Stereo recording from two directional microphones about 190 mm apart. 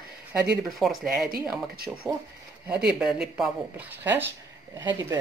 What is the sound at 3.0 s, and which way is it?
Speech, 5° right (ahead or behind).